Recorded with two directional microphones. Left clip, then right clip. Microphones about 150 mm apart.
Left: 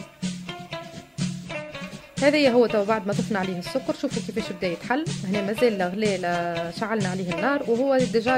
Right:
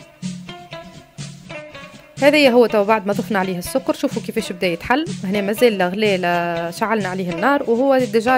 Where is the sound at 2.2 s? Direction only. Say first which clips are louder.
Right 6 dB; 40° right (ahead or behind).